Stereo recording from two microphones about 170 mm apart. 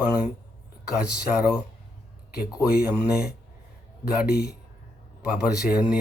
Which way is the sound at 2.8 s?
5° right (ahead or behind).